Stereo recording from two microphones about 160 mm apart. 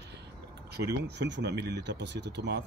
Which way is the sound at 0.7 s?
90° right.